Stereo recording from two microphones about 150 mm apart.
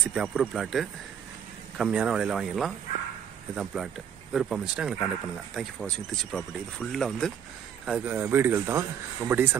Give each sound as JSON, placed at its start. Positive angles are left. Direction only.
{"t": 0.1, "sound": "speech", "side_deg": -5}
{"t": 7.8, "sound": "speech", "side_deg": -10}